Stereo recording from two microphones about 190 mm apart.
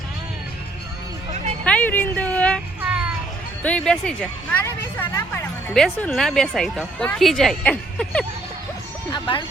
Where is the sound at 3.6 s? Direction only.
5° left (ahead or behind).